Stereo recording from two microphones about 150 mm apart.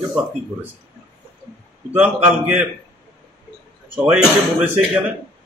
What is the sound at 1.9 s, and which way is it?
Speech, 10° right (ahead or behind).